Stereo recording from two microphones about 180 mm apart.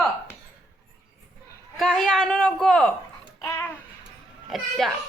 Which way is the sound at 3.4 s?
15° left (ahead or behind).